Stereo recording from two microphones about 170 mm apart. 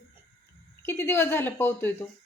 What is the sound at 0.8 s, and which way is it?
A woman's voice, 15° left (ahead or behind).